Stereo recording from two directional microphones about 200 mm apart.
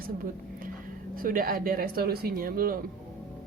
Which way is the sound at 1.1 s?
45° right (ahead or behind).